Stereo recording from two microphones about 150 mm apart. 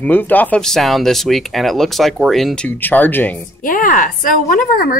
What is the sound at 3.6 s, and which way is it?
A woman's voice, 65° left (ahead or behind).